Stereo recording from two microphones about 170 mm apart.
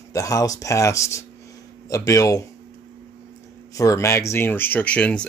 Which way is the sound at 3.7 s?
20° left (ahead or behind).